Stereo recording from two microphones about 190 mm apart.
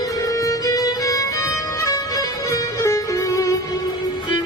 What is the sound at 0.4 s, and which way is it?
Music, 20° left (ahead or behind).